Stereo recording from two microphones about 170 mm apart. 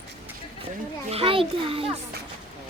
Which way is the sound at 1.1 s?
35° right (ahead or behind).